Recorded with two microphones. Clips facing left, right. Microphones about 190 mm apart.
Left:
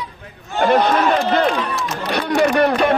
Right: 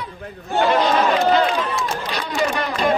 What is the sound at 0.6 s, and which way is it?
Run, 55° left (ahead or behind).